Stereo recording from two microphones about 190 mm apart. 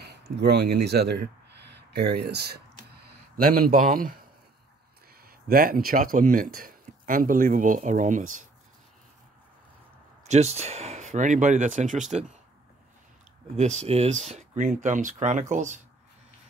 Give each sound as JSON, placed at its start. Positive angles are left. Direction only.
{"t": 0.0, "sound": "speech", "side_deg": -60}
{"t": 5.2, "sound": "speech", "side_deg": -50}
{"t": 10.2, "sound": "speech", "side_deg": -35}
{"t": 13.6, "sound": "speech", "side_deg": -35}